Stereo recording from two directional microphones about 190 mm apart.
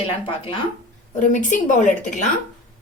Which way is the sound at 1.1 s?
40° left (ahead or behind).